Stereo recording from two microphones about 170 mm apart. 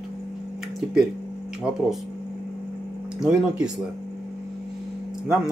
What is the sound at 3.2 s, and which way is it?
Speech, 5° right (ahead or behind).